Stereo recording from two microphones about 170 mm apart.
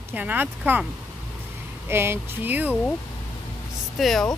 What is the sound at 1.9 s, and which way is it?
Speech, 15° right (ahead or behind).